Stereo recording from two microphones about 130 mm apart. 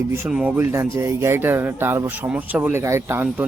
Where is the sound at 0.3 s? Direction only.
5° right (ahead or behind).